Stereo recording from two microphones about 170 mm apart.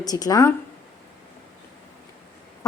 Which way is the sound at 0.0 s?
20° left (ahead or behind).